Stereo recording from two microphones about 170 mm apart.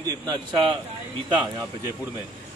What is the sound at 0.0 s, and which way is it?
Speech, 25° right (ahead or behind).